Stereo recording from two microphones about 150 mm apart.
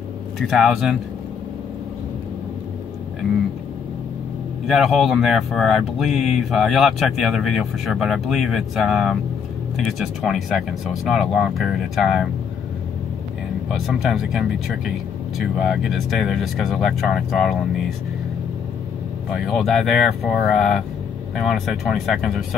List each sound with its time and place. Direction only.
0.4 s speech: centre (ahead or behind)
4.6 s speech: centre (ahead or behind)
13.7 s speech: centre (ahead or behind)
19.3 s speech: centre (ahead or behind)